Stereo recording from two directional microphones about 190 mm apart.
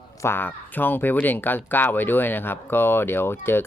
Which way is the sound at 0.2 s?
10° left (ahead or behind).